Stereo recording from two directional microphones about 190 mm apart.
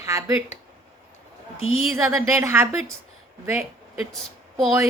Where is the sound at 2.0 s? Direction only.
15° right (ahead or behind).